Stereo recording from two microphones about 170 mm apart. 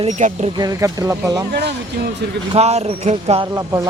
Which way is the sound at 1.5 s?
75° right (ahead or behind).